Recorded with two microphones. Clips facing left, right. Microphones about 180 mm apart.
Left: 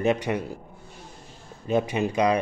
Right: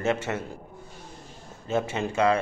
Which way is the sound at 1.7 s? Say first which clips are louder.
Left 3 dB; 15° left (ahead or behind).